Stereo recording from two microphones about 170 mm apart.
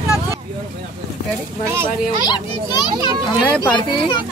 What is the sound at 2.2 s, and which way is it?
Speech, 25° left (ahead or behind).